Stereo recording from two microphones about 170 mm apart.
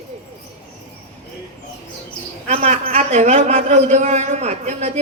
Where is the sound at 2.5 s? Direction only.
40° right (ahead or behind).